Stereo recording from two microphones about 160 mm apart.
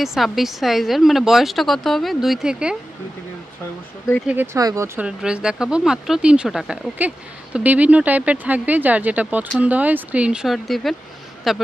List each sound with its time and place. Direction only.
0.0 s a woman's voice: centre (ahead or behind)
4.6 s speech: 20° right (ahead or behind)
5.0 s a woman's voice: 5° right (ahead or behind)